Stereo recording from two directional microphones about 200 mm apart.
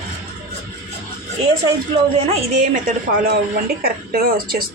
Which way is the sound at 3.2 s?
50° right (ahead or behind).